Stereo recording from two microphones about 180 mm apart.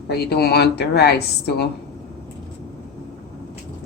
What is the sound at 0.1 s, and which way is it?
A woman's voice, 65° left (ahead or behind).